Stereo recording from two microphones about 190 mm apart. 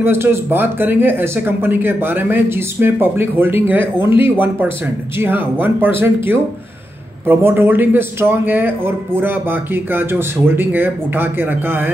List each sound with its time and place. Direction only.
0.0 s speech: 10° right (ahead or behind)
5.2 s speech: 10° right (ahead or behind)